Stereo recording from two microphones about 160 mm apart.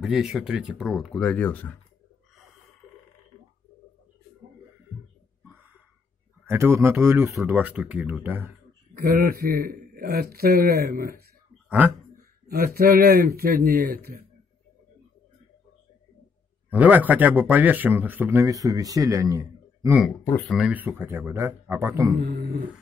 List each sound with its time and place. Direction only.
0.0 s speech: 5° right (ahead or behind)
6.4 s speech: 15° right (ahead or behind)
9.0 s a man's voice: 65° right (ahead or behind)
11.8 s speech: 10° right (ahead or behind)
12.4 s a man's voice: 70° right (ahead or behind)
16.7 s speech: 10° right (ahead or behind)
20.4 s speech: centre (ahead or behind)